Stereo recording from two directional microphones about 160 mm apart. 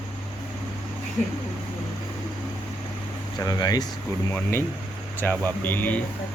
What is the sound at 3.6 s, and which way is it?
Speech, 25° left (ahead or behind).